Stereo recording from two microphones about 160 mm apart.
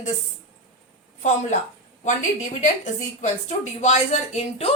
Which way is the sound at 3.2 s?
45° left (ahead or behind).